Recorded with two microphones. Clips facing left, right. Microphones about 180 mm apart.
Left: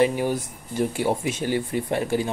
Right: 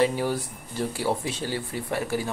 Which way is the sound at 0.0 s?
15° left (ahead or behind).